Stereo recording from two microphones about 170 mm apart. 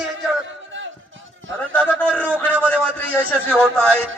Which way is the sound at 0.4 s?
90° right.